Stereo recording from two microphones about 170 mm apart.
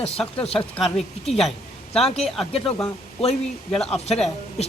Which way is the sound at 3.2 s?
40° left (ahead or behind).